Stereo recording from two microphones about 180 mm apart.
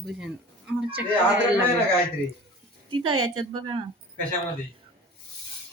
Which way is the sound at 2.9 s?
25° right (ahead or behind).